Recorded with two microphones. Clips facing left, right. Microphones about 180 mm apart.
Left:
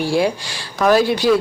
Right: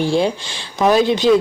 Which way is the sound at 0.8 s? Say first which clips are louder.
Right 1 dB; 20° right (ahead or behind).